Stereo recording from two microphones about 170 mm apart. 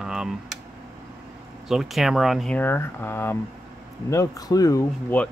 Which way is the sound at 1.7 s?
Centre (ahead or behind).